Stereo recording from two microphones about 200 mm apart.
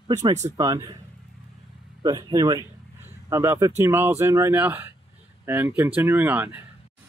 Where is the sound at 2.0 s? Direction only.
20° right (ahead or behind).